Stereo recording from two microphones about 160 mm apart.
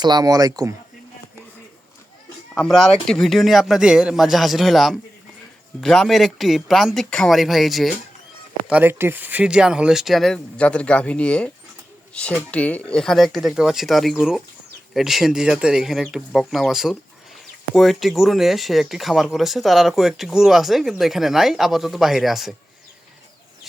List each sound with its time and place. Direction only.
0.0 s speech: 25° right (ahead or behind)
2.6 s speech: centre (ahead or behind)
8.6 s speech: 10° right (ahead or behind)